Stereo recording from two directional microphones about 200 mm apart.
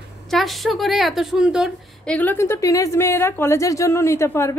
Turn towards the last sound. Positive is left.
turn(degrees=15)  # may be behind; listen again after turning